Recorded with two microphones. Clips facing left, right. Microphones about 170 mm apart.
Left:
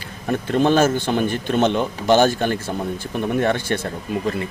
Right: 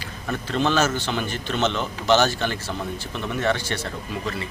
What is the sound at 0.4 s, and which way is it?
A man's voice, 50° left (ahead or behind).